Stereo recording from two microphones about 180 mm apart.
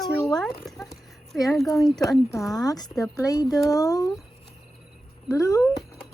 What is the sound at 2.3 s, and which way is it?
Speech, 20° left (ahead or behind).